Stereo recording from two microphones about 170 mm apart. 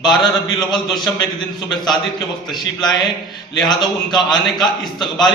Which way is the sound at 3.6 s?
25° left (ahead or behind).